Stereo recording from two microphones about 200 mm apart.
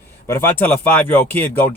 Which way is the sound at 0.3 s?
10° left (ahead or behind).